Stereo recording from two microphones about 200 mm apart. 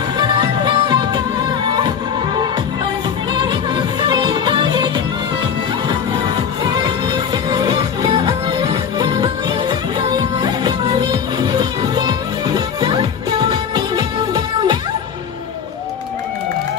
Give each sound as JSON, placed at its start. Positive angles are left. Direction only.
{"t": 0.2, "sound": "music", "side_deg": -20}
{"t": 3.3, "sound": "music", "side_deg": -20}